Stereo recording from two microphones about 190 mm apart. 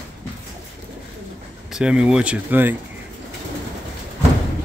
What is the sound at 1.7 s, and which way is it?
Speech, 5° right (ahead or behind).